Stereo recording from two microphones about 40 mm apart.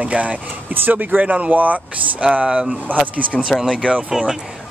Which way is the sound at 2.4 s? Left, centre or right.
Centre.